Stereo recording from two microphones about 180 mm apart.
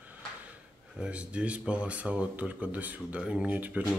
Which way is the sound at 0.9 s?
5° right (ahead or behind).